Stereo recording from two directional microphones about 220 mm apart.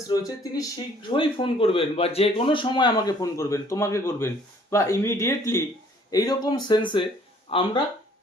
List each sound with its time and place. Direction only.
0.1 s a man's voice: 15° left (ahead or behind)